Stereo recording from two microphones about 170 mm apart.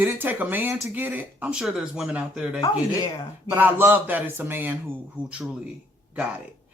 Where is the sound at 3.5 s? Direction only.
15° right (ahead or behind).